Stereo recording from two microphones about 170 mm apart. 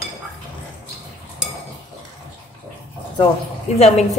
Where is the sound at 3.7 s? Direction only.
40° left (ahead or behind).